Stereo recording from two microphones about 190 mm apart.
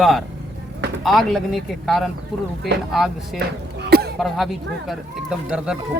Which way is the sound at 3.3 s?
60° right (ahead or behind).